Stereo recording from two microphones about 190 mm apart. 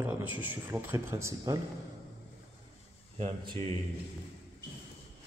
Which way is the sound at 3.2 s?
30° right (ahead or behind).